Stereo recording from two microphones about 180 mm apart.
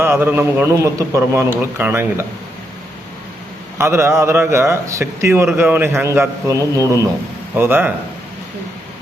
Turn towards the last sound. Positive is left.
turn(degrees=-10)  # may be behind; listen again after turning